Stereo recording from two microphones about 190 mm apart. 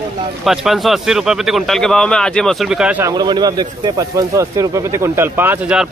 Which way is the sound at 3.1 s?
20° right (ahead or behind).